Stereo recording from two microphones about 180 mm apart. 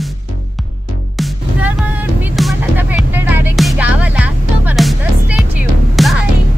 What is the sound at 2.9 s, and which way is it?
Music, 10° right (ahead or behind).